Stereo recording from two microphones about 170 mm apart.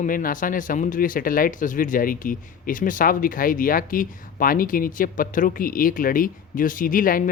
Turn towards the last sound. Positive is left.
turn(degrees=55)  # may be behind; listen again after turning